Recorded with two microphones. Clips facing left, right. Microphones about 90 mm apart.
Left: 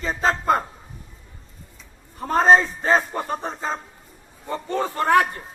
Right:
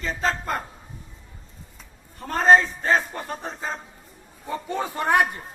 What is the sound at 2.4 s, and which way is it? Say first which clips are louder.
Speech: even; centre (ahead or behind).